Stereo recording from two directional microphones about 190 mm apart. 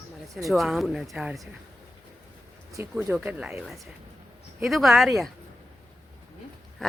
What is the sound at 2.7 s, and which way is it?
Speech, 15° right (ahead or behind).